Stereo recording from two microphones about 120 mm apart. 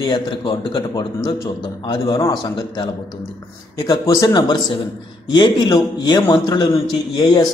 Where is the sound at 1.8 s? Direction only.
35° left (ahead or behind).